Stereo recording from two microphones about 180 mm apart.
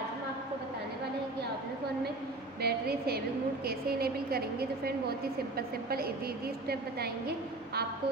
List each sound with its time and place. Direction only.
2.6 s a woman's voice: 60° right (ahead or behind)